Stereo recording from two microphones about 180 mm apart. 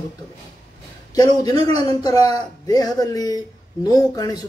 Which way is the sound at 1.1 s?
20° left (ahead or behind).